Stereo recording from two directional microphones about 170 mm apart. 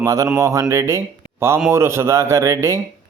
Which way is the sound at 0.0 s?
20° right (ahead or behind).